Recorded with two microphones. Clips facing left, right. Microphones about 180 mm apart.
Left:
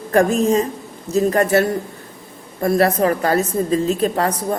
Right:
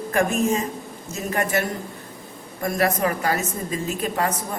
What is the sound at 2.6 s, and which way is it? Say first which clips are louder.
A woman's voice: left 6 dB; 35° left (ahead or behind).